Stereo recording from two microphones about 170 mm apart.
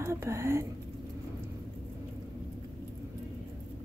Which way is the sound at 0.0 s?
15° right (ahead or behind).